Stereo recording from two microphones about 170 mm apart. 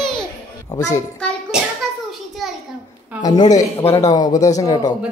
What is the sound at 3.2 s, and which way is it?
Speech, 20° left (ahead or behind).